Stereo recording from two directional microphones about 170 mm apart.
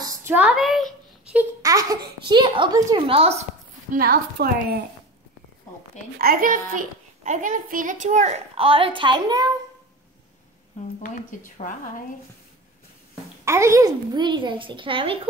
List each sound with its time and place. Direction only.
0.0 s a sound: 15° right (ahead or behind)
1.6 s a child's voice: 20° right (ahead or behind); by 3.3 s 35° right (ahead or behind)
3.9 s a woman's voice: 60° right (ahead or behind)
6.1 s a child's voice: 60° right (ahead or behind); by 9.5 s 25° right (ahead or behind)
11.0 s speech: 50° left (ahead or behind)
13.5 s a child's voice: 15° right (ahead or behind)